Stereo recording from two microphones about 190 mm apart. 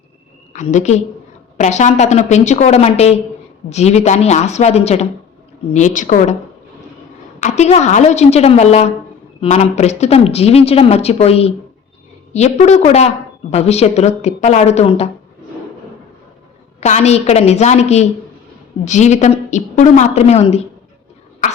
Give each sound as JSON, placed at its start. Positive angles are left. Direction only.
{"t": 0.5, "sound": "a woman's voice", "side_deg": 40}
{"t": 7.3, "sound": "a woman's voice", "side_deg": 40}
{"t": 16.8, "sound": "a woman's voice", "side_deg": 35}